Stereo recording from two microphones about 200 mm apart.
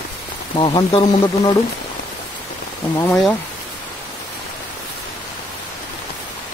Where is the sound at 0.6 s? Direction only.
20° left (ahead or behind).